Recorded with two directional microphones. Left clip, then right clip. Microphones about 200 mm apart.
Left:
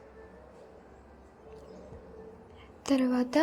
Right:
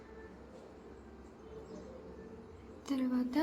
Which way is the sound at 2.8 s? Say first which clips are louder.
Left 8 dB; 35° left (ahead or behind).